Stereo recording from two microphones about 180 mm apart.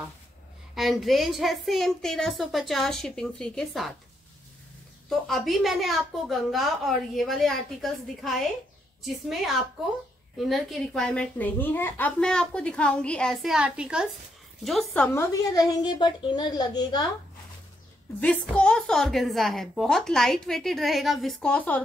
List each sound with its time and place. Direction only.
0.7 s a child's voice: centre (ahead or behind)
5.1 s a child's voice: centre (ahead or behind)
15.1 s a child's voice: 20° left (ahead or behind)
18.2 s a child's voice: 5° left (ahead or behind)